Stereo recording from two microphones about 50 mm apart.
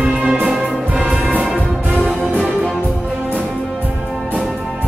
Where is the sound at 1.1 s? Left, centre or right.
Right.